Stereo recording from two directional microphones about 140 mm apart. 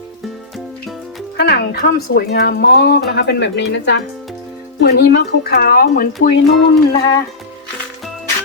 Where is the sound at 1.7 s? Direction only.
90° left.